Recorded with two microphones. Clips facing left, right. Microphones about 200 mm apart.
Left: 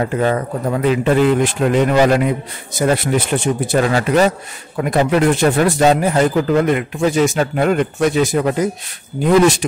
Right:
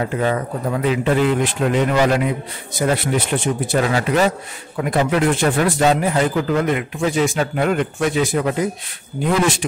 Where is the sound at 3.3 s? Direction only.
40° left (ahead or behind).